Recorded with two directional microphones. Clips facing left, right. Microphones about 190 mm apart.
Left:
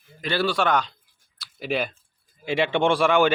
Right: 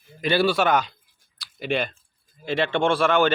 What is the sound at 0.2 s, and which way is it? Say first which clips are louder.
Speech: right 3 dB; 15° right (ahead or behind).